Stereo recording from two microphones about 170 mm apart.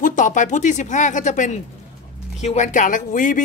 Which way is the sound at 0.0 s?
50° left (ahead or behind).